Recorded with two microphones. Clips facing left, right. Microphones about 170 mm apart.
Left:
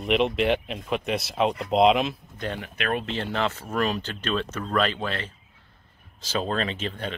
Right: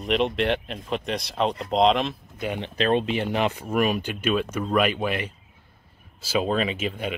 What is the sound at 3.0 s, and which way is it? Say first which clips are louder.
Speech: right 3 dB; 15° right (ahead or behind).